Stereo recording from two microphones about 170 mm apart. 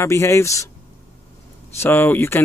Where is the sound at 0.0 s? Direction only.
15° left (ahead or behind).